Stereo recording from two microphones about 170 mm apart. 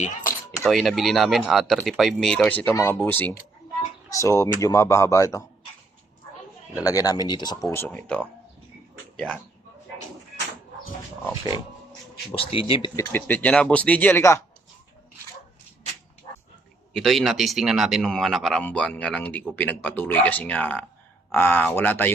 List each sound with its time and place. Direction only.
0.0 s computer keyboard: 50° left (ahead or behind)
0.6 s speech: centre (ahead or behind); by 5.5 s 20° left (ahead or behind)
6.8 s speech: 20° left (ahead or behind); by 9.4 s 5° left (ahead or behind)
12.3 s speech: 35° left (ahead or behind)
13.0 s speech: 10° left (ahead or behind)
16.9 s speech: centre (ahead or behind)